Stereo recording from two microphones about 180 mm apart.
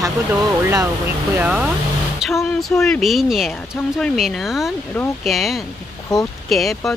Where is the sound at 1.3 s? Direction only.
10° right (ahead or behind).